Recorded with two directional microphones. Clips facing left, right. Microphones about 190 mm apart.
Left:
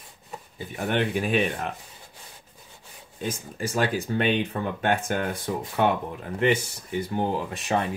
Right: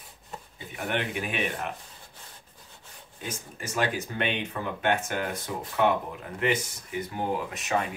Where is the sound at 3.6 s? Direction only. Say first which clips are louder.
Left 3 dB; 30° left (ahead or behind).